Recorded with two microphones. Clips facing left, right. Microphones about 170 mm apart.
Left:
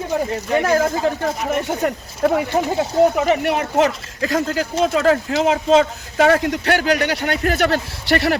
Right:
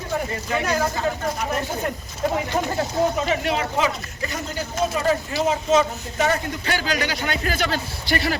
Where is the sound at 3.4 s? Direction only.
60° left (ahead or behind).